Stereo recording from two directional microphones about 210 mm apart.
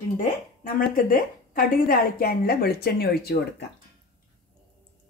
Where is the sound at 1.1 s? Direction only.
40° left (ahead or behind).